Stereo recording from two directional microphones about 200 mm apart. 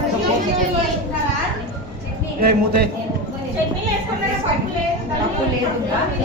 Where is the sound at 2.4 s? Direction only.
50° right (ahead or behind).